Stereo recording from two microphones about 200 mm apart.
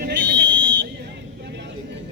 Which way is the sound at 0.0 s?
45° right (ahead or behind).